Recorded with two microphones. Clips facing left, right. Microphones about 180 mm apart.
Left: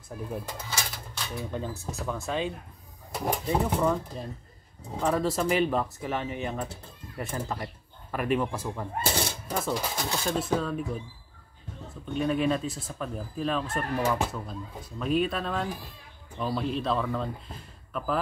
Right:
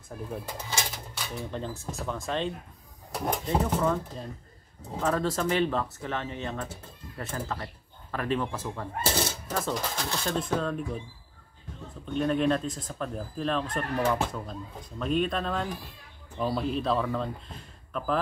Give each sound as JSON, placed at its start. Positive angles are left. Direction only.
{"t": 0.5, "sound": "speech", "side_deg": -15}
{"t": 1.1, "sound": "speech", "side_deg": 0}
{"t": 12.1, "sound": "speech", "side_deg": 5}